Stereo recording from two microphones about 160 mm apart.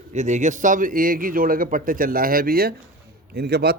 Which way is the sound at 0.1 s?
50° right (ahead or behind).